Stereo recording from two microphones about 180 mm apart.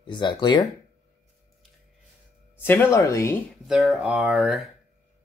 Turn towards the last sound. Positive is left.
turn(degrees=-5)  # may be behind; listen again after turning